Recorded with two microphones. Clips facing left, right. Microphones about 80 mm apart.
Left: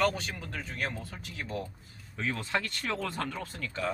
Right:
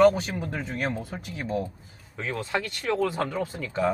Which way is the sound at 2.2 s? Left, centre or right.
Centre.